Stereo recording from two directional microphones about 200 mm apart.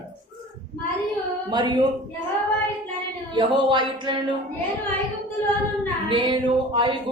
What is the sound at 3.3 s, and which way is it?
Speech, 25° right (ahead or behind).